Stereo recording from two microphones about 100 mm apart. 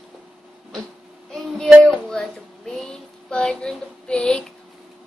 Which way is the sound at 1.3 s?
5° left (ahead or behind).